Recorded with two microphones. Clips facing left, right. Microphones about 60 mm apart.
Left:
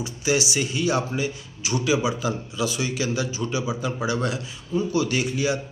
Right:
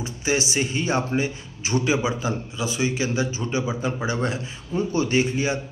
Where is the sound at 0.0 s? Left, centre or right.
Right.